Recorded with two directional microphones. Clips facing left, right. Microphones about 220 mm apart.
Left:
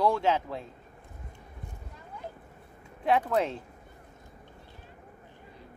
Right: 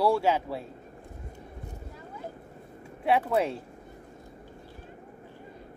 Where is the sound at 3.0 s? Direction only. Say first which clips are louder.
Right 1 dB; 10° right (ahead or behind).